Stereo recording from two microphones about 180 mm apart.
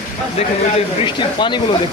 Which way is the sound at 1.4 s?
25° left (ahead or behind).